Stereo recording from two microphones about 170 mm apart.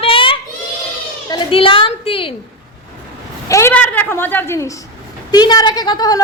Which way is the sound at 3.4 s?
15° left (ahead or behind).